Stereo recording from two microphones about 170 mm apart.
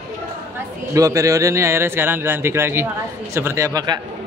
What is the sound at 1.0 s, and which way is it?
A man's voice, 20° right (ahead or behind).